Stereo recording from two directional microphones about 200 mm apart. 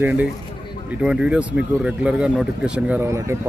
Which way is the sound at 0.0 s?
10° right (ahead or behind).